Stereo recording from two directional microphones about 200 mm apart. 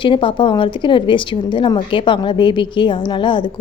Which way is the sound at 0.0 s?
25° left (ahead or behind).